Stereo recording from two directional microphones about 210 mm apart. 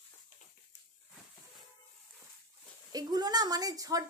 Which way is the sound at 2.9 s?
20° right (ahead or behind).